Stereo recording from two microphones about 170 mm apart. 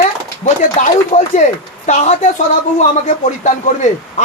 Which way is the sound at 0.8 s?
45° left (ahead or behind).